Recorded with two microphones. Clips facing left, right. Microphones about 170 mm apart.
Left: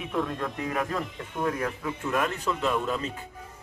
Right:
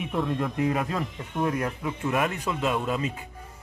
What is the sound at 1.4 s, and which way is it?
Speech, 10° right (ahead or behind).